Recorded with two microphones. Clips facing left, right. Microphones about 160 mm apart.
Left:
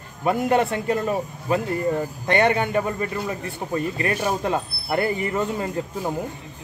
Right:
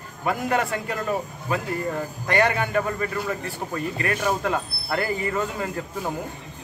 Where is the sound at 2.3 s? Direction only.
25° left (ahead or behind).